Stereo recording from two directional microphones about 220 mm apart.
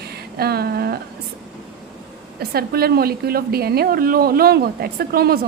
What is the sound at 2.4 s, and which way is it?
A woman's voice, 45° right (ahead or behind).